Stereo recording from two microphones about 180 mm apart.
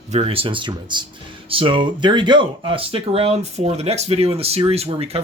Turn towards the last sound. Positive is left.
turn(degrees=-35)  # may be behind; listen again after turning